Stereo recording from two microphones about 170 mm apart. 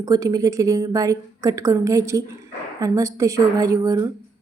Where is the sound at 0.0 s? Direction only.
20° right (ahead or behind).